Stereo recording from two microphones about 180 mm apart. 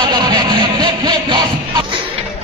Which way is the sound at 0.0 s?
25° right (ahead or behind).